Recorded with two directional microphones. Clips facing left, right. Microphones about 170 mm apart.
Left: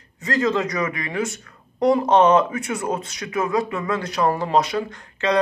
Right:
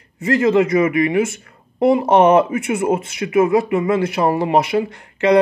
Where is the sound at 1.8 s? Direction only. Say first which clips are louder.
Right 3 dB; 5° right (ahead or behind).